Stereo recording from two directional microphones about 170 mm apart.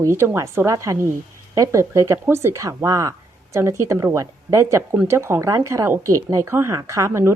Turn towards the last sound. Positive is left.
turn(degrees=-15)  # may be behind; listen again after turning